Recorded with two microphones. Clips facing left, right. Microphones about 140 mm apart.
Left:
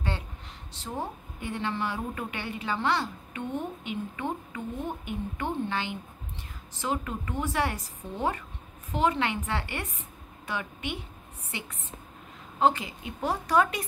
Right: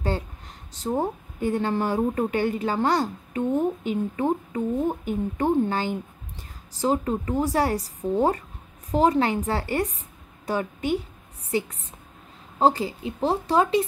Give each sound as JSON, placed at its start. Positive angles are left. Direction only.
{"t": 0.7, "sound": "a woman's voice", "side_deg": -40}